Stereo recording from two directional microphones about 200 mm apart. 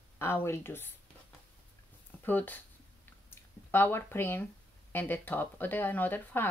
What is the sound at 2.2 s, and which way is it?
Speech, 10° left (ahead or behind).